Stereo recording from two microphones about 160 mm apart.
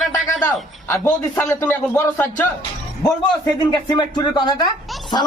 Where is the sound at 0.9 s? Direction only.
15° left (ahead or behind).